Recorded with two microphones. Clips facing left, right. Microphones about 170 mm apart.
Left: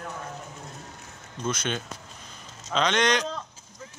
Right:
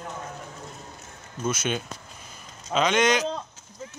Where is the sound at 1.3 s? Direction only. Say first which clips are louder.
Right 2 dB; 10° right (ahead or behind).